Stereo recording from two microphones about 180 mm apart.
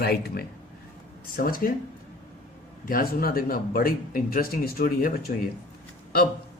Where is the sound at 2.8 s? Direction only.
55° left (ahead or behind).